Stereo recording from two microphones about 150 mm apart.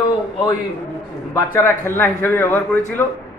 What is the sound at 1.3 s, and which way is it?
A man's voice, 15° left (ahead or behind).